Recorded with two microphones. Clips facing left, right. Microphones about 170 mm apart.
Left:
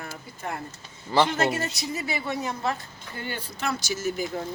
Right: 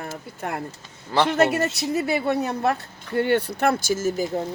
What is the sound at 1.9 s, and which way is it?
Speech, 60° right (ahead or behind).